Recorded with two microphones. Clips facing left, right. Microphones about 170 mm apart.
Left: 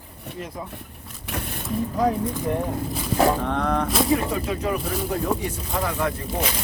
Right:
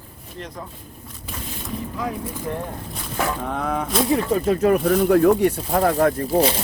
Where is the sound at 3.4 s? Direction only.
5° right (ahead or behind).